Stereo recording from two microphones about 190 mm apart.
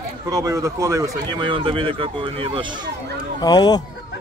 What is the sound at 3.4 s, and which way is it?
Speech, 20° left (ahead or behind).